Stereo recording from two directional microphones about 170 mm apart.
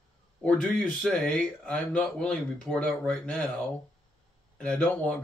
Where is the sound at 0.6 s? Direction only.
5° left (ahead or behind).